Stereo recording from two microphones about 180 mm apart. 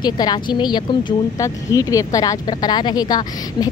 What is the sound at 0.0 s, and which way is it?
Speech, 25° left (ahead or behind).